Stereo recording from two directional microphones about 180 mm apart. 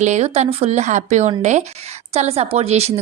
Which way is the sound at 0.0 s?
40° right (ahead or behind).